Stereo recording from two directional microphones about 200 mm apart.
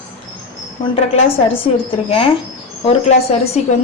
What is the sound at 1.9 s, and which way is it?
A woman's voice, 25° left (ahead or behind).